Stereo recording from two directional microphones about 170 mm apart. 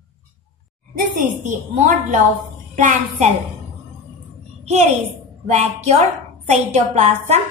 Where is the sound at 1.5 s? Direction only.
45° right (ahead or behind).